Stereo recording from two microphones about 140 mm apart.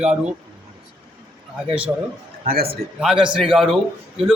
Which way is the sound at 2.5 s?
90° right.